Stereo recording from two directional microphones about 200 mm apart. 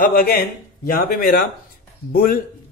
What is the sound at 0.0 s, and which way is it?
A man's voice, 45° left (ahead or behind).